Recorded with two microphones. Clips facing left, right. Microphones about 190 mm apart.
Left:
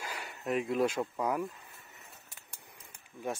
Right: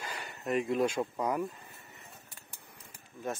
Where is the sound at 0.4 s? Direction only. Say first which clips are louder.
Right 1 dB; centre (ahead or behind).